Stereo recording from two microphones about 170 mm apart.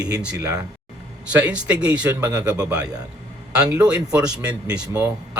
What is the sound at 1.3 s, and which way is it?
A man's voice, 5° right (ahead or behind).